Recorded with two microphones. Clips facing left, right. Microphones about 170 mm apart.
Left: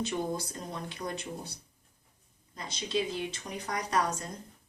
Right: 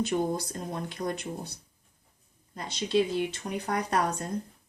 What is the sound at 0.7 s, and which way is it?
Speech, 50° right (ahead or behind).